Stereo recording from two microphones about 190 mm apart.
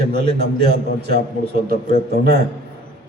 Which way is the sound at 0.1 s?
55° right (ahead or behind).